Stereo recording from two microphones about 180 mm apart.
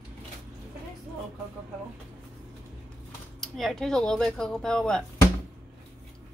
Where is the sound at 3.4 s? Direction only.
Centre (ahead or behind).